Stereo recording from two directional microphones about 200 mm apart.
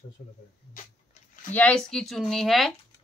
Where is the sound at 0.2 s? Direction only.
35° left (ahead or behind).